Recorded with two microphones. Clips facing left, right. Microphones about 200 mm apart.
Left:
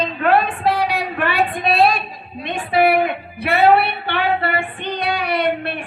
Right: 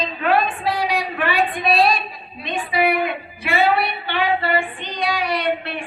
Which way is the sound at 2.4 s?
55° left (ahead or behind).